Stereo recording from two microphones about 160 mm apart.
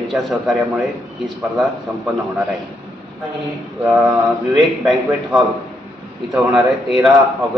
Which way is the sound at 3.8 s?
10° right (ahead or behind).